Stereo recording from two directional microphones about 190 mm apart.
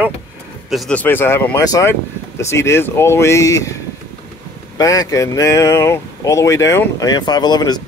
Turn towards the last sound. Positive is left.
turn(degrees=20)  # may be behind; listen again after turning